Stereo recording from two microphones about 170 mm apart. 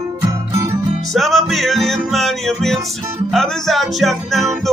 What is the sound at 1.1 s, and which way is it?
Music, centre (ahead or behind).